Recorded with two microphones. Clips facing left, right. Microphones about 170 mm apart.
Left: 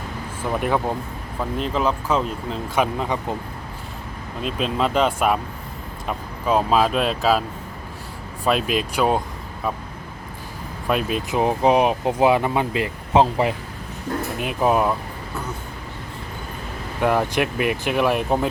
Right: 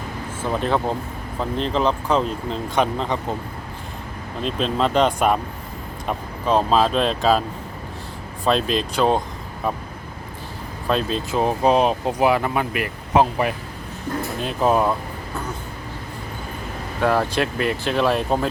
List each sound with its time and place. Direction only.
0.6 s speech: 10° left (ahead or behind)
4.4 s speech: 5° left (ahead or behind)
8.4 s speech: 10° left (ahead or behind)
10.8 s speech: 15° left (ahead or behind)
14.3 s speech: 10° left (ahead or behind)
17.0 s speech: 15° left (ahead or behind)